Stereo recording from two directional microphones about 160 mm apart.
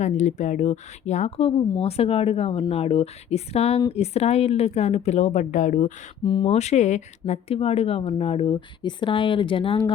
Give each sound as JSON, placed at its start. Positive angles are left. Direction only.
{"t": 0.0, "sound": "a woman's voice", "side_deg": 45}
{"t": 6.2, "sound": "speech", "side_deg": 30}